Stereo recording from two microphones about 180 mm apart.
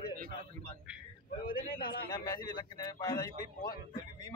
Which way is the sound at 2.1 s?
20° left (ahead or behind).